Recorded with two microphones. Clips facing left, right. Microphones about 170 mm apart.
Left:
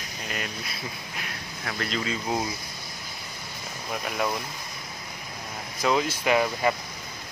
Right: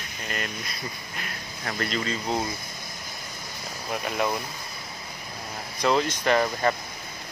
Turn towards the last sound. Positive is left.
turn(degrees=10)  # may be behind; listen again after turning